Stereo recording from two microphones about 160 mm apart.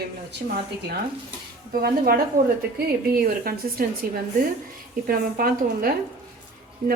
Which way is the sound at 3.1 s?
70° right (ahead or behind).